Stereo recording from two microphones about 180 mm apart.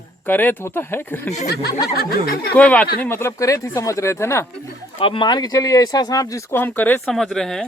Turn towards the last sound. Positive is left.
turn(degrees=5)  # may be behind; listen again after turning